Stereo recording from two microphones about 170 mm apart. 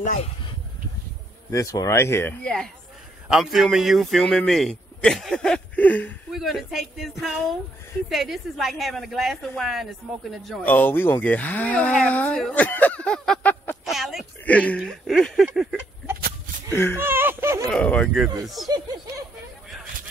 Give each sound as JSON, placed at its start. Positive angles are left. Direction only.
{"t": 0.0, "sound": "speech", "side_deg": 50}
{"t": 1.5, "sound": "a man's voice", "side_deg": 20}
{"t": 10.6, "sound": "speech", "side_deg": 10}
{"t": 13.9, "sound": "a sound", "side_deg": 0}
{"t": 16.2, "sound": "a sound", "side_deg": -60}
{"t": 16.7, "sound": "speech", "side_deg": 15}
{"t": 17.0, "sound": "speech", "side_deg": -15}
{"t": 17.6, "sound": "a man's voice", "side_deg": 5}